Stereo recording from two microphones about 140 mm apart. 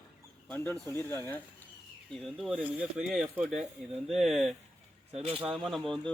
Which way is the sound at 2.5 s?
10° right (ahead or behind).